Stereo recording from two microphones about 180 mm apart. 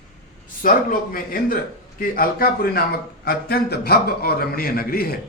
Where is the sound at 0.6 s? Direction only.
50° left (ahead or behind).